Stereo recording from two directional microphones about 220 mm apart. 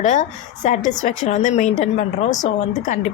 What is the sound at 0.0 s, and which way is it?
A woman's voice, 35° left (ahead or behind).